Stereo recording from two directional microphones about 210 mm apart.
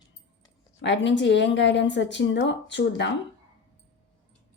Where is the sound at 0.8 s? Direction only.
55° left (ahead or behind).